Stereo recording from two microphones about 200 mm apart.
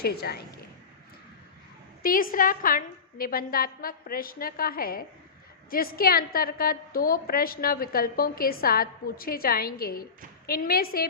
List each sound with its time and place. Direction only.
0.0 s a woman's voice: 50° left (ahead or behind)
2.0 s a woman's voice: 45° left (ahead or behind)